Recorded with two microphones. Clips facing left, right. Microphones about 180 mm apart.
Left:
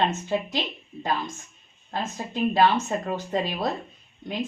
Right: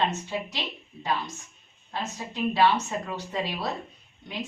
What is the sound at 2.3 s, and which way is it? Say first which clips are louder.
Speech: left 2 dB; 50° left (ahead or behind).